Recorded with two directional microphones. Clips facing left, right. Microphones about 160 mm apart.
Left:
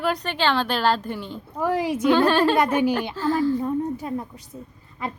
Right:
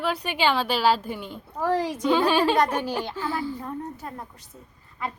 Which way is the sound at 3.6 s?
15° left (ahead or behind).